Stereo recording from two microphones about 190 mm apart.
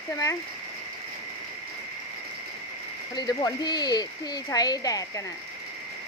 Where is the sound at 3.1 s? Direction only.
20° left (ahead or behind).